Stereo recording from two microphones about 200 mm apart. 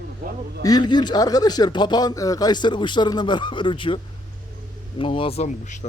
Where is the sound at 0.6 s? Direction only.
20° left (ahead or behind).